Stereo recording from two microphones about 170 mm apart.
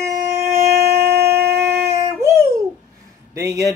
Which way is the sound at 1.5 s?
15° right (ahead or behind).